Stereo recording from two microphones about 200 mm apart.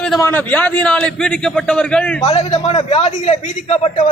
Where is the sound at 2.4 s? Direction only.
25° left (ahead or behind).